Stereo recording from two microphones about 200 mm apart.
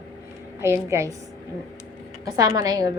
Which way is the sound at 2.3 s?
20° right (ahead or behind).